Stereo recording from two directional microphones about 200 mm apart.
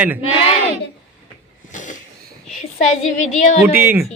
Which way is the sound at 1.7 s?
40° left (ahead or behind).